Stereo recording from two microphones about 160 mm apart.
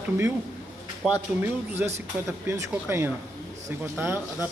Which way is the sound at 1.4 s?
10° right (ahead or behind).